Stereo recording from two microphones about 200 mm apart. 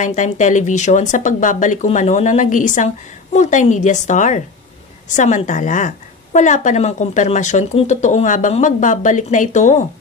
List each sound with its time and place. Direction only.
0.0 s a woman's voice: 40° left (ahead or behind)